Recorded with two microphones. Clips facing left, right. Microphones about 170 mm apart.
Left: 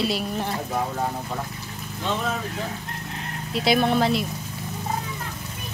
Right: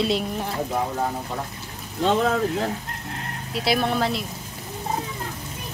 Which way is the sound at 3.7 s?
Centre (ahead or behind).